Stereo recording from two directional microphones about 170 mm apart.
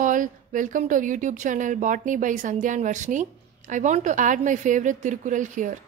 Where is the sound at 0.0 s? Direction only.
50° right (ahead or behind).